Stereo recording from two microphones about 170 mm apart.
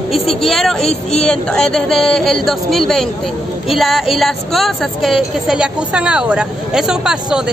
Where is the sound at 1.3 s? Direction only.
5° left (ahead or behind).